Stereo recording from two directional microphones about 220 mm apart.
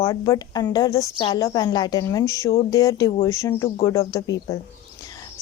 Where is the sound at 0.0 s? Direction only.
15° left (ahead or behind).